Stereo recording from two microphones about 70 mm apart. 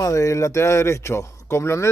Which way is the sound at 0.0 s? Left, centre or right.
Left.